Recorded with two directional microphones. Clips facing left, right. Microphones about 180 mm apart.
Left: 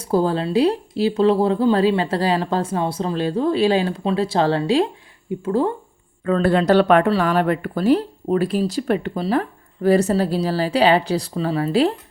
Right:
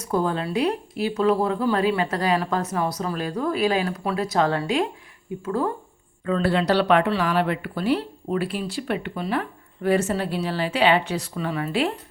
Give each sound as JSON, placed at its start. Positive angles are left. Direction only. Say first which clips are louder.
{"t": 0.0, "sound": "speech", "louder": "left 5 dB", "side_deg": 30}
{"t": 6.2, "sound": "speech", "louder": "left 5 dB", "side_deg": 45}